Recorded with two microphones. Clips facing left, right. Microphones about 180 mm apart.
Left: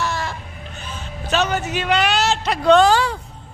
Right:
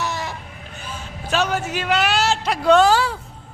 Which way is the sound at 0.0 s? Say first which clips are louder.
Left 2 dB; 20° right (ahead or behind).